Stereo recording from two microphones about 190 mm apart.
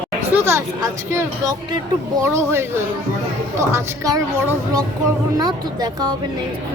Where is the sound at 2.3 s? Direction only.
15° right (ahead or behind).